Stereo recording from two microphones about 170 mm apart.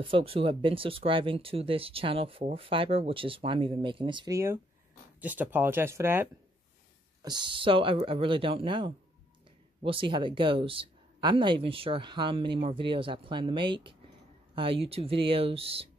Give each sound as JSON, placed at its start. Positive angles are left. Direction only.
{"t": 0.0, "sound": "speech", "side_deg": -30}
{"t": 5.2, "sound": "speech", "side_deg": -10}
{"t": 7.2, "sound": "speech", "side_deg": -30}